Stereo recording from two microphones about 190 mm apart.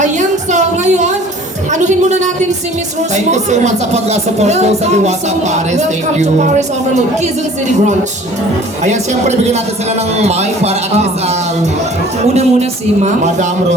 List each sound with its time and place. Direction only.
0.0 s a sound: 40° right (ahead or behind)
3.3 s speech: 35° right (ahead or behind)
8.8 s speech: 35° right (ahead or behind)
12.2 s speech: 35° right (ahead or behind)